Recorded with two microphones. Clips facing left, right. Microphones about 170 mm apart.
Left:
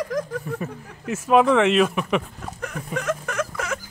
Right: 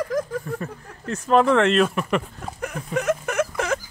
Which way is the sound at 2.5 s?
15° right (ahead or behind).